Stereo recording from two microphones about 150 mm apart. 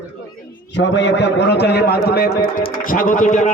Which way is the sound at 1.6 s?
90° left.